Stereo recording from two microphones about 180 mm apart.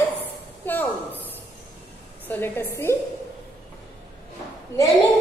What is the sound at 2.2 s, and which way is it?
Speech, 10° left (ahead or behind).